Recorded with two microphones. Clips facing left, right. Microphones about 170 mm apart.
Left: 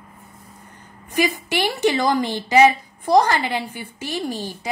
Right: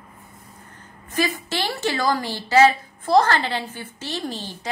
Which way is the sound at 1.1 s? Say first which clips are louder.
Left 3 dB; 15° left (ahead or behind).